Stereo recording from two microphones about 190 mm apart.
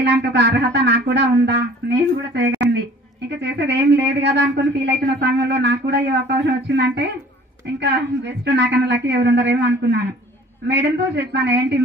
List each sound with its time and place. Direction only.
0.0 s speech: 65° right (ahead or behind)